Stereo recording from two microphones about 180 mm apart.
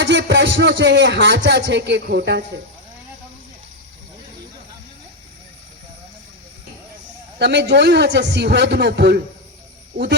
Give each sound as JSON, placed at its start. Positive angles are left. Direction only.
{"t": 0.0, "sound": "speech", "side_deg": -75}
{"t": 7.3, "sound": "a man's voice", "side_deg": -70}